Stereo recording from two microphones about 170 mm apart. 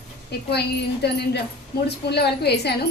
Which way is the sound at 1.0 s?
75° left (ahead or behind).